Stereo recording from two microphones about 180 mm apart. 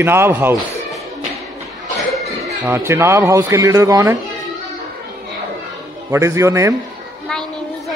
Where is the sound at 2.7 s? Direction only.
15° right (ahead or behind).